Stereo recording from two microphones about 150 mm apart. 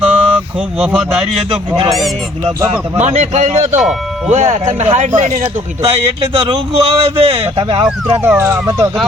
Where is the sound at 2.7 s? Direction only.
50° right (ahead or behind).